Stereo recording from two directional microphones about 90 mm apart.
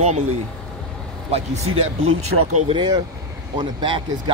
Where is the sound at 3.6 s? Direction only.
60° right (ahead or behind).